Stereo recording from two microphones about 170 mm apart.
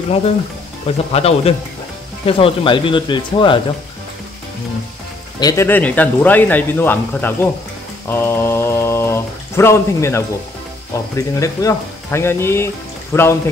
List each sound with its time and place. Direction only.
0.8 s speech: 35° left (ahead or behind)
5.4 s speech: 20° left (ahead or behind)